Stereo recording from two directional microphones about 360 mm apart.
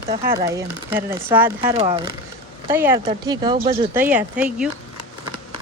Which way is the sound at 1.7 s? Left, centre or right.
Centre.